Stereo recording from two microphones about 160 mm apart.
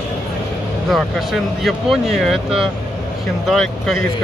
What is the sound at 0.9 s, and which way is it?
Speech, centre (ahead or behind).